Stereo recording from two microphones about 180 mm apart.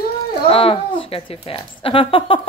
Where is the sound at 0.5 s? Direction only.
30° left (ahead or behind).